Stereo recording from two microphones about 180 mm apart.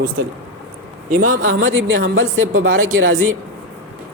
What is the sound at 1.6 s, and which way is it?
A man's voice, 90° right.